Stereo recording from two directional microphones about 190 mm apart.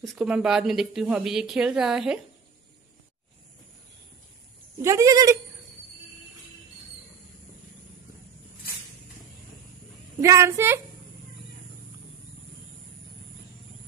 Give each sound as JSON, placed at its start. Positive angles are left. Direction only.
{"t": 0.0, "sound": "a woman's voice", "side_deg": 0}
{"t": 4.8, "sound": "a child's voice", "side_deg": -15}
{"t": 10.2, "sound": "a child's voice", "side_deg": -15}